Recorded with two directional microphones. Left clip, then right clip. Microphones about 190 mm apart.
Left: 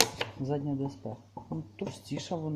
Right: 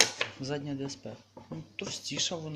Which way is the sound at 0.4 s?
5° left (ahead or behind).